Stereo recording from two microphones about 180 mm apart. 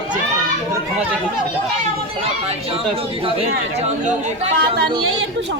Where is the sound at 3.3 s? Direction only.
35° right (ahead or behind).